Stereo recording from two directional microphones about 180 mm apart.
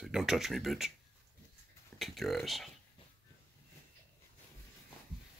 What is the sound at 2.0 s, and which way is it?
Speech, centre (ahead or behind).